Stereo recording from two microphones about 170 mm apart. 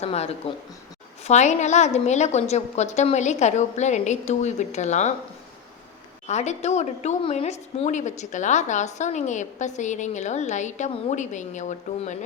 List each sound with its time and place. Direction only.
0.0 s a woman's voice: 35° left (ahead or behind)
6.2 s a woman's voice: 40° left (ahead or behind)